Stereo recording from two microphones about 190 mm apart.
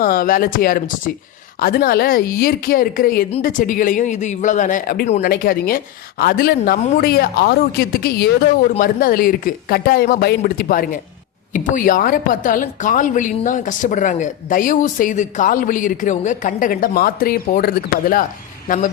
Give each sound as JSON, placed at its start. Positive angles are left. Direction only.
{"t": 0.0, "sound": "a woman's voice", "side_deg": 50}
{"t": 6.7, "sound": "speech", "side_deg": 35}
{"t": 7.0, "sound": "a woman's voice", "side_deg": 50}